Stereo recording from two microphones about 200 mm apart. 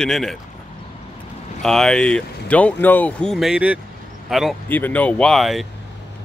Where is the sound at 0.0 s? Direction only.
Centre (ahead or behind).